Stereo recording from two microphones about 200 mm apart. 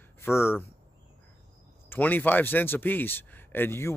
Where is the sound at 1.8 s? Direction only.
10° left (ahead or behind).